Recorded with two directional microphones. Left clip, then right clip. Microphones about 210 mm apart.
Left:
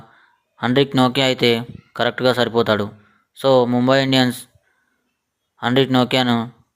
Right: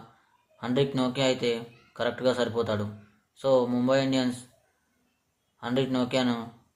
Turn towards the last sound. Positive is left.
turn(degrees=40)  # may be behind; listen again after turning